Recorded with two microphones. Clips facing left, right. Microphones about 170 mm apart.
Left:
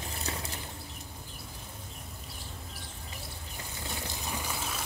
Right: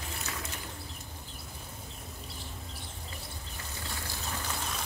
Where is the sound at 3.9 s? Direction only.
15° left (ahead or behind).